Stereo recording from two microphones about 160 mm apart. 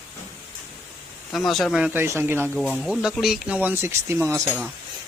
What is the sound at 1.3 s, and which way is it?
A man's voice, centre (ahead or behind).